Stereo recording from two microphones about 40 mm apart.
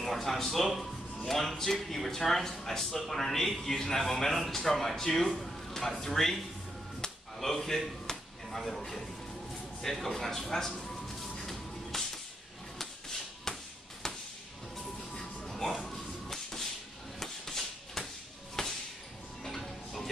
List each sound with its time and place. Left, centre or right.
0.0 s a man's voice: centre
7.3 s speech: centre
9.8 s music: centre
13.5 s tap: centre
14.0 s a sound: centre
15.1 s music: centre
17.2 s a sound: centre
19.4 s music: centre